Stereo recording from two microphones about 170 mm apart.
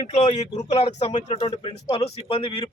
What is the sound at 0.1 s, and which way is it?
A man's voice, 40° left (ahead or behind).